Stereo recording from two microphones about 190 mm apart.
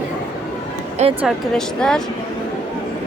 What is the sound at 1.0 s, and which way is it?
Speech, 35° right (ahead or behind).